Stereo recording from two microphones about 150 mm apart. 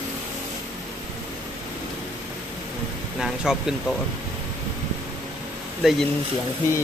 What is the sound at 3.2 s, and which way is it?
Speech, 5° right (ahead or behind).